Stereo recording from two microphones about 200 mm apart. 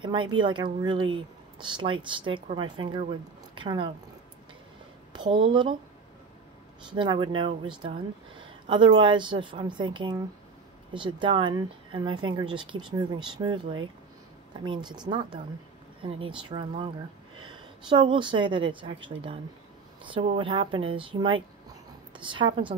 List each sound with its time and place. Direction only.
0.0 s speech: 25° right (ahead or behind)
5.1 s speech: 25° right (ahead or behind)
6.9 s speech: 25° right (ahead or behind)